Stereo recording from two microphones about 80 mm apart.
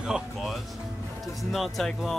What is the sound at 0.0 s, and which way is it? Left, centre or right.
Speech, centre.